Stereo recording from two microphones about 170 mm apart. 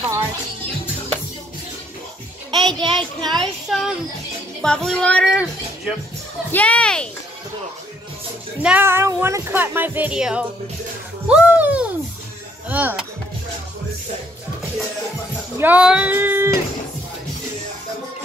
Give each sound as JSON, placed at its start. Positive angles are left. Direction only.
{"t": 2.5, "sound": "a sound", "side_deg": -25}
{"t": 3.0, "sound": "a child's voice", "side_deg": -25}
{"t": 3.3, "sound": "a child's voice", "side_deg": 0}
{"t": 6.5, "sound": "speech", "side_deg": 10}
{"t": 8.6, "sound": "speech", "side_deg": -10}
{"t": 11.2, "sound": "a sound", "side_deg": -5}
{"t": 12.6, "sound": "speech", "side_deg": -10}
{"t": 15.5, "sound": "speech", "side_deg": -10}